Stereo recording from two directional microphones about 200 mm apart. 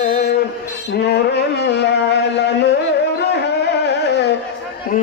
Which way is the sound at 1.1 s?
55° left (ahead or behind).